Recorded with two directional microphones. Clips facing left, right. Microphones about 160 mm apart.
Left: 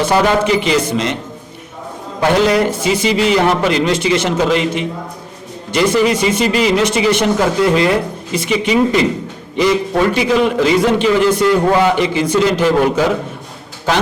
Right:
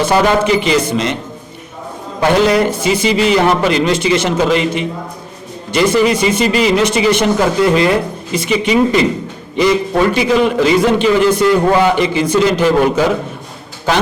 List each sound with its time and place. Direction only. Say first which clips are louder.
0.0 s a man's voice: right 1 dB; 15° right (ahead or behind)
2.2 s a man's voice: right 1 dB; 10° right (ahead or behind)